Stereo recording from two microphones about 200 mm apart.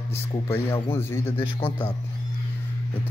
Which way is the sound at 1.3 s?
25° left (ahead or behind).